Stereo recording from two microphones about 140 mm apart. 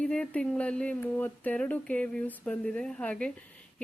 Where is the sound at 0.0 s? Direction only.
5° left (ahead or behind).